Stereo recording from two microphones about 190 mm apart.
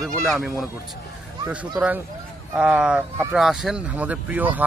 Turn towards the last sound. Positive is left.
turn(degrees=-10)  # may be behind; listen again after turning